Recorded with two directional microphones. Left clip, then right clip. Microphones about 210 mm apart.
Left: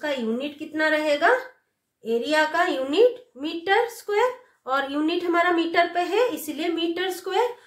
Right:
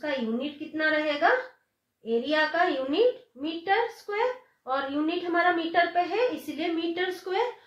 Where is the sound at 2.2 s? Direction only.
40° left (ahead or behind).